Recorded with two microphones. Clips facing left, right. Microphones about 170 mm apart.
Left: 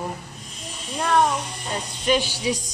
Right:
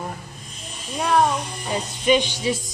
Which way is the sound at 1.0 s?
5° right (ahead or behind).